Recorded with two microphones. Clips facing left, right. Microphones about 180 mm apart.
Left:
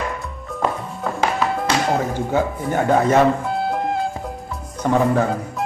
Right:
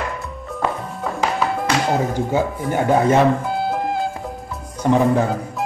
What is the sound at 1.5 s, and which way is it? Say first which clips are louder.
Music: even; centre (ahead or behind).